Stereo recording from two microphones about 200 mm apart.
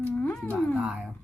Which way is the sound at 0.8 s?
5° right (ahead or behind).